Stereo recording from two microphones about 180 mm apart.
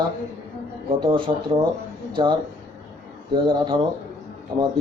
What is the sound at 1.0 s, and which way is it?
Speech, 30° right (ahead or behind).